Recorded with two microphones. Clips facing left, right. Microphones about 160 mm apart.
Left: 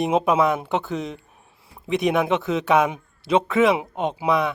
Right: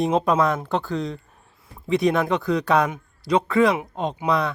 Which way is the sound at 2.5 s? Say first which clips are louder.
Even; 20° left (ahead or behind).